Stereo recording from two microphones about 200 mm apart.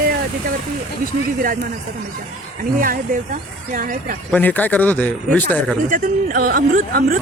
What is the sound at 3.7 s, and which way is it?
Speech, 45° right (ahead or behind).